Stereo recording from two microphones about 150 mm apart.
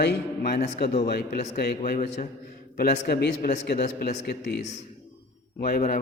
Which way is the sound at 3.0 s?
90° left.